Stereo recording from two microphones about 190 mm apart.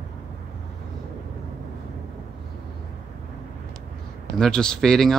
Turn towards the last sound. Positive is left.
turn(degrees=0)  # may be behind; listen again after turning